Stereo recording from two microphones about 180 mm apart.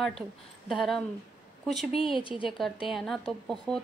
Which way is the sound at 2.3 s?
30° left (ahead or behind).